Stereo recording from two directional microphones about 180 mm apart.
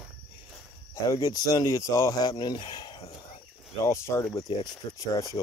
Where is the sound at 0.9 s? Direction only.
20° left (ahead or behind).